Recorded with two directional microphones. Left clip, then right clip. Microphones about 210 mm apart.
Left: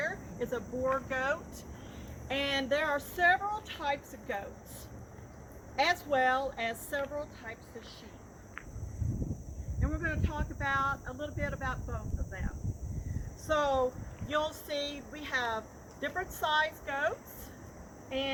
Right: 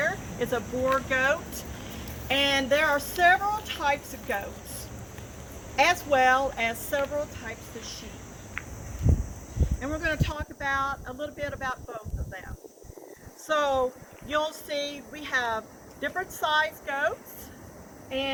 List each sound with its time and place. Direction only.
0.0 s a woman's voice: 5° left (ahead or behind)
5.7 s a woman's voice: 10° left (ahead or behind)
9.8 s speech: 55° right (ahead or behind)
13.5 s a woman's voice: 10° right (ahead or behind)